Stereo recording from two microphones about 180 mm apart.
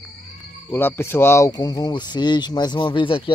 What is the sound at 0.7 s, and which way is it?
Speech, 10° left (ahead or behind).